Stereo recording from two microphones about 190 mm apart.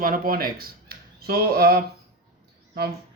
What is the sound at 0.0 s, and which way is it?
Speech, 50° right (ahead or behind).